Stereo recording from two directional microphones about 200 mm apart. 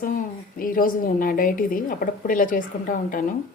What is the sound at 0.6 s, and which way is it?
A woman's voice, 45° left (ahead or behind).